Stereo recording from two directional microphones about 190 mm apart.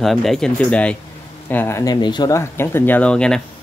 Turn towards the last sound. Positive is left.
turn(degrees=5)  # may be behind; listen again after turning